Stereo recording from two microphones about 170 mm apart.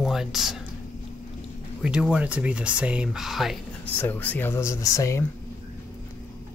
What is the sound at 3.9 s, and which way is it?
Speech, 10° left (ahead or behind).